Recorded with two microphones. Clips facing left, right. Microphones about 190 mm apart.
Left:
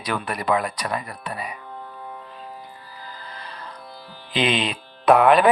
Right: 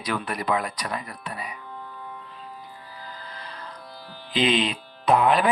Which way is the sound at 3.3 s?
65° left (ahead or behind).